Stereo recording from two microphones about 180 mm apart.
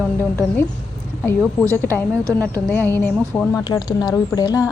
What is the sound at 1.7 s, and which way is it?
Speech, 10° left (ahead or behind).